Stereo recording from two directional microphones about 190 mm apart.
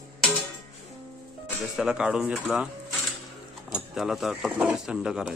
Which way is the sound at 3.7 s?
Centre (ahead or behind).